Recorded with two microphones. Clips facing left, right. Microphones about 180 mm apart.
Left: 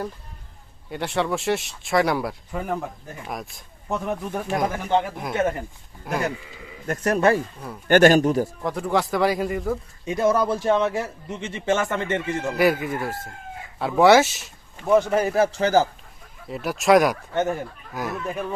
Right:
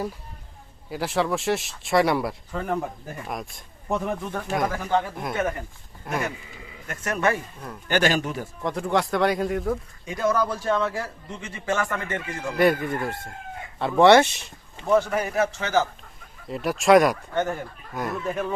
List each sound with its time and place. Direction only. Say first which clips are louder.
0.9 s speech: even; centre (ahead or behind)
2.5 s speech: left 1 dB; 10° left (ahead or behind)
2.8 s speech: right 1 dB; centre (ahead or behind)
4.7 s a man's voice: left 2 dB; 20° left (ahead or behind)
6.1 s speech: left 2 dB; centre (ahead or behind)
6.8 s speech: left 5 dB; 35° left (ahead or behind)
7.9 s speech: left 8 dB; 50° left (ahead or behind)
8.6 s speech: left 1 dB; centre (ahead or behind)
10.1 s a man's voice: left 3 dB; 25° left (ahead or behind)
12.5 s speech: right 1 dB; 5° left (ahead or behind)
15.1 s speech: left 4 dB; 30° left (ahead or behind)
16.5 s speech: even; centre (ahead or behind)
17.3 s a man's voice: left 2 dB; 20° left (ahead or behind)
17.9 s speech: right 1 dB; centre (ahead or behind)